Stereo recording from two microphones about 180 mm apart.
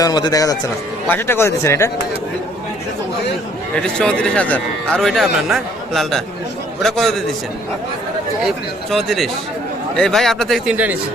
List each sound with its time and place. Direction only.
0.0 s speech: 20° left (ahead or behind)
3.9 s speech: 5° left (ahead or behind)
8.4 s speech: centre (ahead or behind)